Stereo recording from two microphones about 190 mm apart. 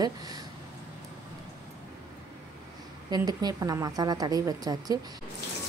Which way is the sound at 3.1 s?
20° right (ahead or behind).